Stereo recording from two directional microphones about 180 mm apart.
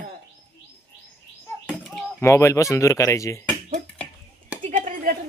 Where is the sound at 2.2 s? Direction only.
15° left (ahead or behind).